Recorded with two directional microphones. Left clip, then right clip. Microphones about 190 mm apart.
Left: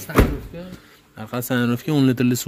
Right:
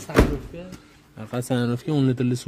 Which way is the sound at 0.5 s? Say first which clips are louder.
Left 2 dB; 45° left (ahead or behind).